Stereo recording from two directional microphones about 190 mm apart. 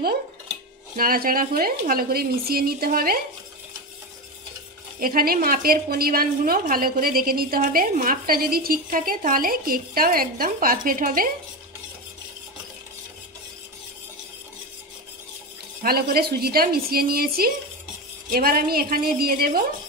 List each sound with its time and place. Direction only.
0.9 s a woman's voice: 50° right (ahead or behind)
5.0 s a woman's voice: 50° right (ahead or behind)
15.8 s a woman's voice: 50° right (ahead or behind)